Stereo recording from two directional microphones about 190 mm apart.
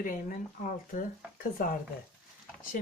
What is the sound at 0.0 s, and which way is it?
Speech, 45° left (ahead or behind).